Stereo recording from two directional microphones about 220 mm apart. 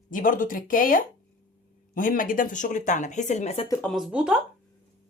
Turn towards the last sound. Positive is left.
turn(degrees=-5)  # may be behind; listen again after turning